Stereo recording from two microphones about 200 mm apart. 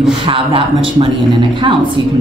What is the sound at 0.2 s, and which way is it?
Speech, 25° right (ahead or behind).